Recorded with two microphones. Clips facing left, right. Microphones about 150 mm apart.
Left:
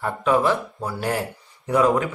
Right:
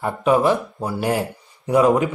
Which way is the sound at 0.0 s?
15° right (ahead or behind).